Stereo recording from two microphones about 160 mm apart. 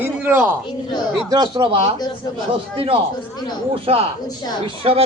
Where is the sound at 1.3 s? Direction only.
25° right (ahead or behind).